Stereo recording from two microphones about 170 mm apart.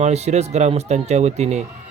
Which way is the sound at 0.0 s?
40° right (ahead or behind).